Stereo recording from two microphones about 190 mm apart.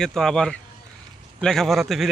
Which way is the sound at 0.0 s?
5° left (ahead or behind).